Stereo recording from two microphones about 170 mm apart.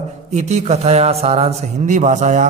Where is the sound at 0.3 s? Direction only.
40° right (ahead or behind).